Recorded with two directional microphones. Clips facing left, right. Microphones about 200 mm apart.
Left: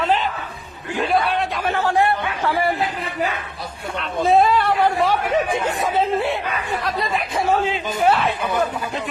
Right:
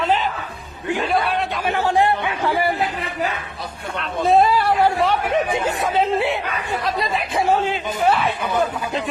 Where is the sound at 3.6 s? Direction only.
Centre (ahead or behind).